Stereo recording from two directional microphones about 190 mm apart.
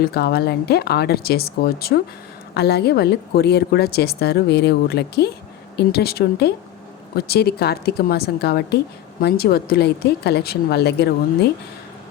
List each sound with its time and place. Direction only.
0.0 s speech: 55° left (ahead or behind)